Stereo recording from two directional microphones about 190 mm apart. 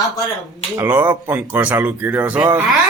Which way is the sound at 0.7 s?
10° right (ahead or behind).